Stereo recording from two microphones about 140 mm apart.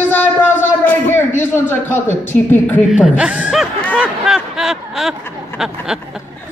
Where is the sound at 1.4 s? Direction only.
15° left (ahead or behind).